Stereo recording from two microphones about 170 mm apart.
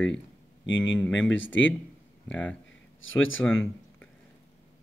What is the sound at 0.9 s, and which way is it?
Speech, 5° left (ahead or behind).